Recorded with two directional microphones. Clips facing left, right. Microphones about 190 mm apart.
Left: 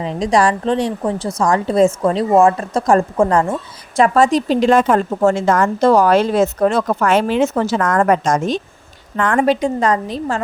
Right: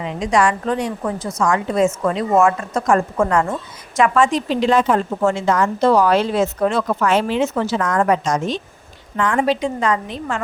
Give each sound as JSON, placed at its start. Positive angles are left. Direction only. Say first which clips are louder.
{"t": 0.0, "sound": "a woman's voice", "louder": "left 2 dB", "side_deg": 35}